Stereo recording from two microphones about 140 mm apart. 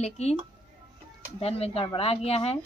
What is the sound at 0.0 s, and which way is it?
Speech, 50° left (ahead or behind).